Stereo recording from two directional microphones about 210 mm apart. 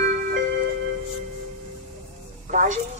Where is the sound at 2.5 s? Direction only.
35° right (ahead or behind).